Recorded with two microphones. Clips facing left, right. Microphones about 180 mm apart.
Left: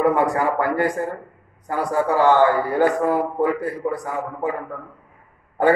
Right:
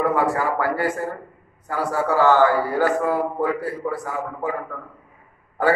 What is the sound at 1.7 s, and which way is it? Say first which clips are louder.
A man's voice: left 2 dB; 15° left (ahead or behind).